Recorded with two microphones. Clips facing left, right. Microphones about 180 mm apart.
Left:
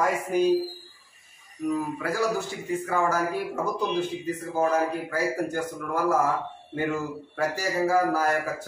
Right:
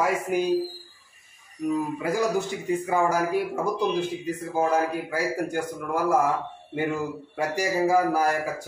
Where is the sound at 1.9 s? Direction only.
15° right (ahead or behind).